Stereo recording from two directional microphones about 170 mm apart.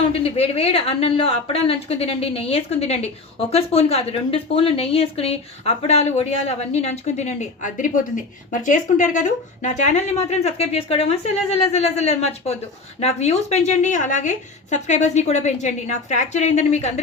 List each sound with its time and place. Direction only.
0.1 s a woman's voice: 35° left (ahead or behind)